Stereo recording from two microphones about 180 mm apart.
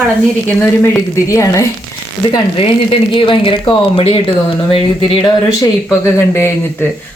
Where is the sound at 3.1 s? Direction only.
30° left (ahead or behind).